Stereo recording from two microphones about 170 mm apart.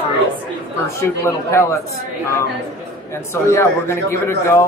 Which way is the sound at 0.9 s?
15° left (ahead or behind).